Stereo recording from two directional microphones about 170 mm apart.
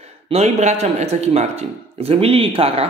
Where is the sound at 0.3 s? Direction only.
40° right (ahead or behind).